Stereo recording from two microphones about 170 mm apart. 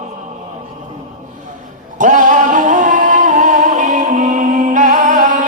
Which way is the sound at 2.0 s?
50° right (ahead or behind).